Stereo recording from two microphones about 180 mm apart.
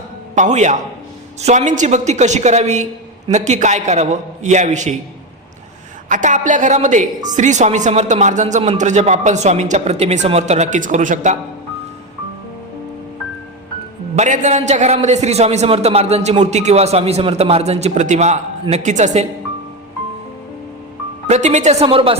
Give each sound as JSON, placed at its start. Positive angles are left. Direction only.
{"t": 0.3, "sound": "a woman's voice", "side_deg": -40}
{"t": 6.1, "sound": "a woman's voice", "side_deg": -45}
{"t": 14.2, "sound": "a man's voice", "side_deg": -40}
{"t": 21.2, "sound": "a man's voice", "side_deg": -40}